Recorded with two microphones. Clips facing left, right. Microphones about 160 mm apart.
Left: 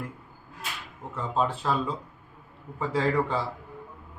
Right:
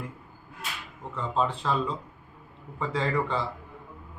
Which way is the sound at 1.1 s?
5° left (ahead or behind).